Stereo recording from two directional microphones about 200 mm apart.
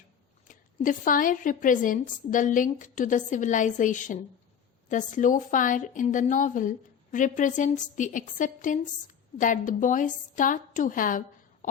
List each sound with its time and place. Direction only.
0.4 s a woman's voice: 40° left (ahead or behind)